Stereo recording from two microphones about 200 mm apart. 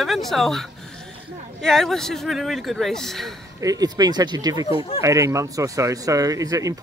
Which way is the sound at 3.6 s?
20° right (ahead or behind).